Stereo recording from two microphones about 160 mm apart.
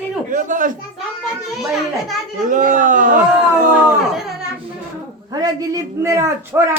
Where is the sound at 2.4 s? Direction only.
55° right (ahead or behind).